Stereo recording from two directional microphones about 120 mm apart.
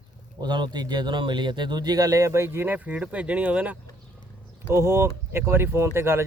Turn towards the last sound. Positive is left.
turn(degrees=-20)  # may be behind; listen again after turning